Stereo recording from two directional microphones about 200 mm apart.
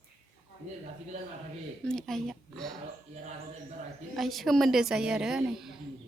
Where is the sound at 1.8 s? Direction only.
Centre (ahead or behind).